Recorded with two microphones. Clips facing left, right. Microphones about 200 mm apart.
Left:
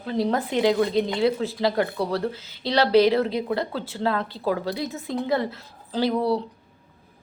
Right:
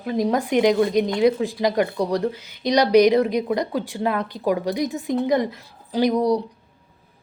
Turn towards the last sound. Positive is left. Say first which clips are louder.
# right 4 dB
turn(degrees=-15)  # may be behind; listen again after turning